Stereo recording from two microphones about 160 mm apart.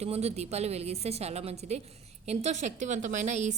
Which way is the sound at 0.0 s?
40° right (ahead or behind).